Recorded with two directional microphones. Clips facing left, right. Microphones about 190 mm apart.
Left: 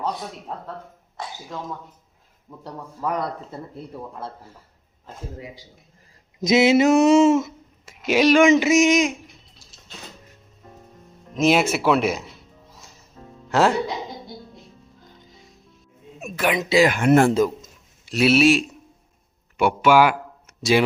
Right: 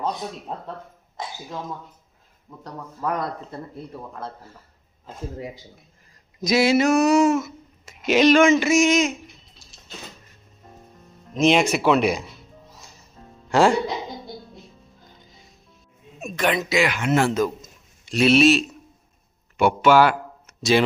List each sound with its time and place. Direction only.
0.0 s speech: 15° right (ahead or behind)
2.6 s speech: 5° left (ahead or behind)
6.4 s a sound: 20° left (ahead or behind)
7.9 s speech: 10° left (ahead or behind)
11.3 s speech: 5° left (ahead or behind)
13.5 s speech: centre (ahead or behind)
16.2 s speech: 5° left (ahead or behind)
16.6 s a sound: 30° left (ahead or behind)
16.8 s speech: 50° left (ahead or behind)
18.0 s speech: 5° left (ahead or behind)
19.5 s a sound: 10° left (ahead or behind)